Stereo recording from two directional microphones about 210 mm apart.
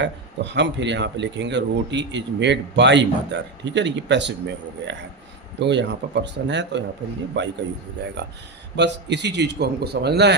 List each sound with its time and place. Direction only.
0.0 s speech: 55° right (ahead or behind)
8.7 s a man's voice: 55° right (ahead or behind)